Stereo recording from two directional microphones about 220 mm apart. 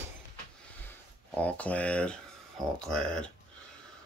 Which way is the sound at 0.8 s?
5° left (ahead or behind).